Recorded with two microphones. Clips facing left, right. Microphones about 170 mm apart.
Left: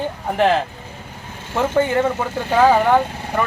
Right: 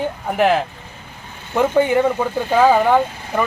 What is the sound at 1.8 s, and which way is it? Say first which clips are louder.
Speech: right 2 dB; 15° right (ahead or behind).